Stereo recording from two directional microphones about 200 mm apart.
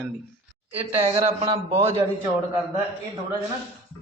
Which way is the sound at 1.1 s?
30° right (ahead or behind).